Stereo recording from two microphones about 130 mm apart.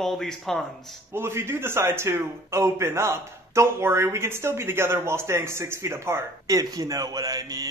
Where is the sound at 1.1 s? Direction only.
20° right (ahead or behind).